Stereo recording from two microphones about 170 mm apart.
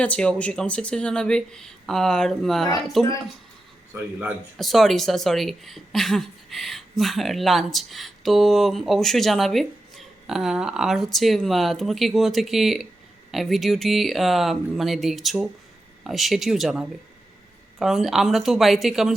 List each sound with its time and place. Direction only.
0.0 s speech: 5° left (ahead or behind)
4.5 s speech: centre (ahead or behind)